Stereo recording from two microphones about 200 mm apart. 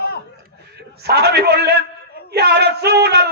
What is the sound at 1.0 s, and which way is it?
Speech, 55° right (ahead or behind).